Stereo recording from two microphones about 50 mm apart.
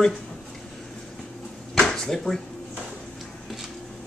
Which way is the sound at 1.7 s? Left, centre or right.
Centre.